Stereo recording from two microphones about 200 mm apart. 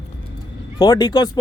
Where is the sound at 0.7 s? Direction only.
25° left (ahead or behind).